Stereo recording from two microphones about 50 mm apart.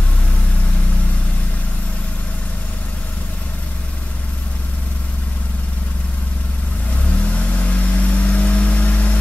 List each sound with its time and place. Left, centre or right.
7.1 s vehicle: left